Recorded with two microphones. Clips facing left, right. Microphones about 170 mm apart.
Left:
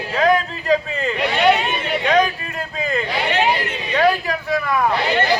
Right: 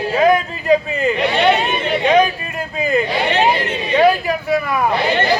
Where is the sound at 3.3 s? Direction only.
25° right (ahead or behind).